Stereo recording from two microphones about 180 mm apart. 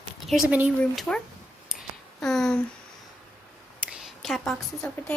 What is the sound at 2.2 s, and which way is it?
Speech, centre (ahead or behind).